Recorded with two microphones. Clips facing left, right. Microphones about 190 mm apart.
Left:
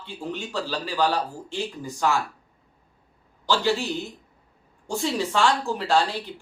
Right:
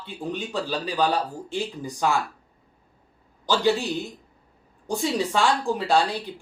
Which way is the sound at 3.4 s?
15° right (ahead or behind).